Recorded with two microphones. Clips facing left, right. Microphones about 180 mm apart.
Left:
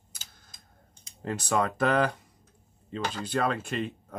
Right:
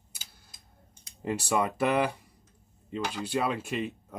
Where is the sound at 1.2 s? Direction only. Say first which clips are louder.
Even; 10° right (ahead or behind).